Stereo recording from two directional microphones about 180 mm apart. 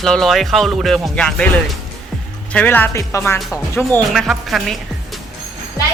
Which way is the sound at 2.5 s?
10° left (ahead or behind).